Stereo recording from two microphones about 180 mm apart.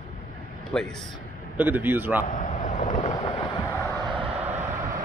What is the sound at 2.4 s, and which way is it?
Vehicle, 45° left (ahead or behind).